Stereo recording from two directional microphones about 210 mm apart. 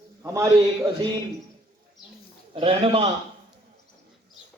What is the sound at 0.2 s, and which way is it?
Speech, 10° right (ahead or behind).